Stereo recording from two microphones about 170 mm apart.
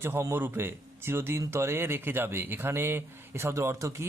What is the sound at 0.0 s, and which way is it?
A man's voice, 15° right (ahead or behind).